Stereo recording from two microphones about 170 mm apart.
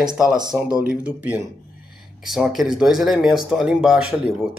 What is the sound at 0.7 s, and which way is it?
Speech, 5° right (ahead or behind).